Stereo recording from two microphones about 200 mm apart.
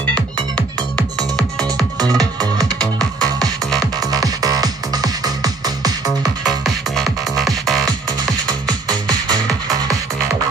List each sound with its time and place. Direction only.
0.1 s music: 5° left (ahead or behind)
1.8 s music: 20° right (ahead or behind)
6.6 s music: centre (ahead or behind)
8.6 s music: 20° right (ahead or behind)